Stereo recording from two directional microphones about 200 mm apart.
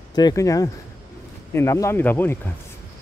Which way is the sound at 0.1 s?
20° left (ahead or behind).